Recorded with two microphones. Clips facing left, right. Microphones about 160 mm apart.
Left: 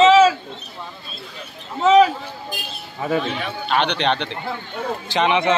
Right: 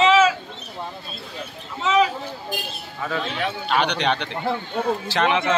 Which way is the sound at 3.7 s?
10° right (ahead or behind).